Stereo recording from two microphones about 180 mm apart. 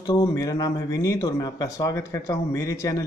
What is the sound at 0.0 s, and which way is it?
Speech, 20° left (ahead or behind).